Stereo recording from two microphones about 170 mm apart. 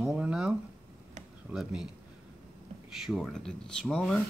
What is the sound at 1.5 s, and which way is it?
Speech, 5° right (ahead or behind).